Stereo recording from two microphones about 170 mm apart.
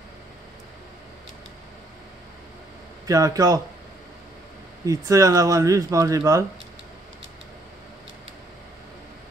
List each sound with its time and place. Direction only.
3.1 s speech: 20° right (ahead or behind)
4.8 s speech: 20° right (ahead or behind)